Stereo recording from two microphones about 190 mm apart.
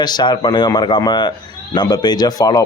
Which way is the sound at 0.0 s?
20° left (ahead or behind).